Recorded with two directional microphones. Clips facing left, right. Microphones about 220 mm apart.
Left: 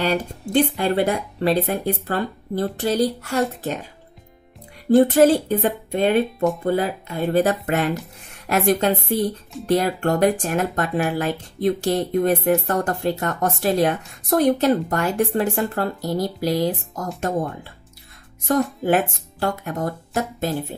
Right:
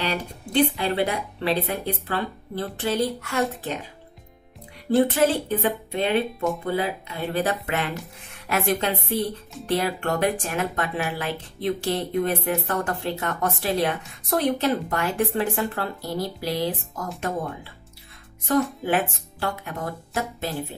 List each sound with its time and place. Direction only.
0.0 s speech: 45° left (ahead or behind)
4.9 s a woman's voice: 40° left (ahead or behind)
19.4 s speech: 45° left (ahead or behind)